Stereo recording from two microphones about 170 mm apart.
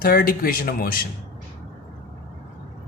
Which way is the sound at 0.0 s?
60° left (ahead or behind).